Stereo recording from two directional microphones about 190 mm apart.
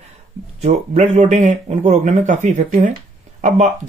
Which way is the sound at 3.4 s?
40° right (ahead or behind).